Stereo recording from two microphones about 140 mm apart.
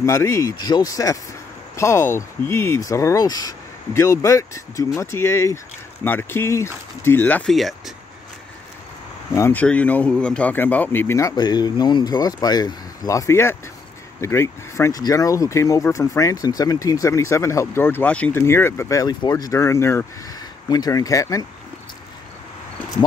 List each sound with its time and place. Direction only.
0.0 s speech: 20° left (ahead or behind)
7.5 s speech: centre (ahead or behind)
9.3 s speech: 15° left (ahead or behind)